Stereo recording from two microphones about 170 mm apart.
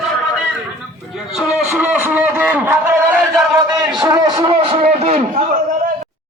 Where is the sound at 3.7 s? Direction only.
20° right (ahead or behind); by 5.2 s 35° right (ahead or behind).